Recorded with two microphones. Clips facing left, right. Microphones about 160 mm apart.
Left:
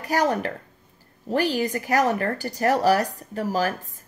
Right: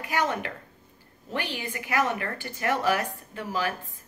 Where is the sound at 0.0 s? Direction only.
40° left (ahead or behind).